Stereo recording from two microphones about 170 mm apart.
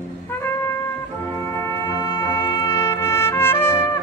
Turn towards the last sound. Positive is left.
turn(degrees=15)  # may be behind; listen again after turning